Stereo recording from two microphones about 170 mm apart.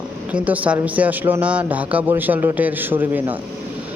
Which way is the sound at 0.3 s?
10° right (ahead or behind).